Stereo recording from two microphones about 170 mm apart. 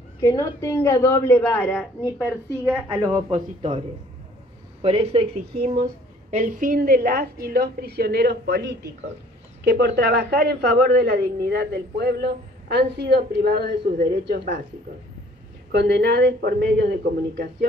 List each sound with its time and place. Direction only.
0.2 s a woman's voice: 20° left (ahead or behind)
2.6 s a woman's voice: 10° right (ahead or behind)
3.0 s a man's voice: 25° right (ahead or behind)
4.8 s speech: 35° right (ahead or behind)
6.3 s a man's voice: 50° right (ahead or behind); by 8.9 s 70° right (ahead or behind)
9.7 s a man's voice: 85° right; by 14.6 s 70° right (ahead or behind)
15.7 s a man's voice: 80° right